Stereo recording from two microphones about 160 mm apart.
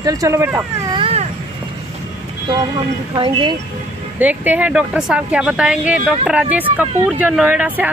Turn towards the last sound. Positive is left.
turn(degrees=-10)  # may be behind; listen again after turning